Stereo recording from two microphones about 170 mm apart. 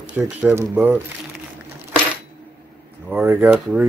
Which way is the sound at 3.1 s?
10° right (ahead or behind).